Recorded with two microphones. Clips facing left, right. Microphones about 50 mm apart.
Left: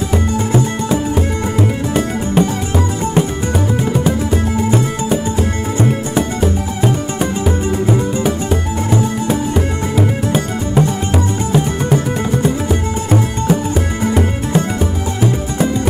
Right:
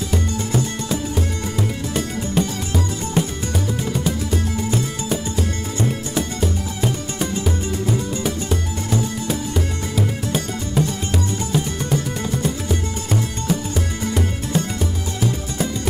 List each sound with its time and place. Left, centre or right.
0.1 s music: left